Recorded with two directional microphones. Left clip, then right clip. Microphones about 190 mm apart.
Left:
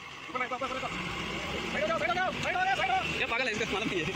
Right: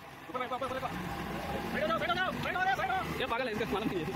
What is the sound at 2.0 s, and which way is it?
Vehicle, 35° left (ahead or behind).